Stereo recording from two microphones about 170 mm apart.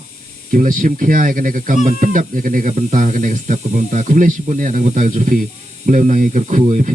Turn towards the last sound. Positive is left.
turn(degrees=-50)  # may be behind; listen again after turning